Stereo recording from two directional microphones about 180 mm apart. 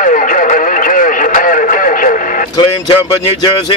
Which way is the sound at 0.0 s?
45° left (ahead or behind).